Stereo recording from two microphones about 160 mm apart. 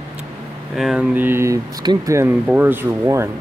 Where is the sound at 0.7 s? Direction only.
5° right (ahead or behind).